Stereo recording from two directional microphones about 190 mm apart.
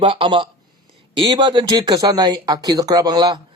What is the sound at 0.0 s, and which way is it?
Speech, 25° right (ahead or behind).